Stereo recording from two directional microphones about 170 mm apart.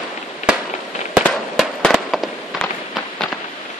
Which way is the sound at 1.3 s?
Centre (ahead or behind).